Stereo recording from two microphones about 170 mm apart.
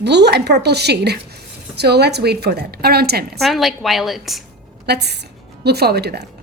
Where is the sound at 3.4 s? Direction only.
Centre (ahead or behind).